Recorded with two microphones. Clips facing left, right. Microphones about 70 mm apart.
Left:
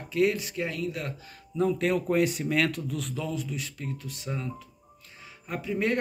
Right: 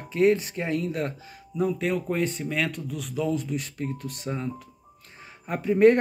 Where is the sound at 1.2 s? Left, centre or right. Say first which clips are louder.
Even; centre.